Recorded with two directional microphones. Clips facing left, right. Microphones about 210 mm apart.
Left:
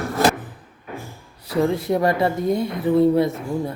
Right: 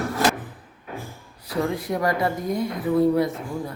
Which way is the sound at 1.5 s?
25° left (ahead or behind).